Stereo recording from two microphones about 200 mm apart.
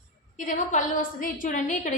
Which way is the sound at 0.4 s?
40° left (ahead or behind).